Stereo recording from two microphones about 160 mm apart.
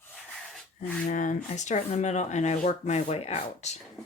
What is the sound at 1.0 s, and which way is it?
Speech, 55° left (ahead or behind).